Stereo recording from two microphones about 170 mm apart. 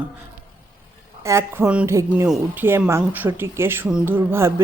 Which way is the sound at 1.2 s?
15° right (ahead or behind).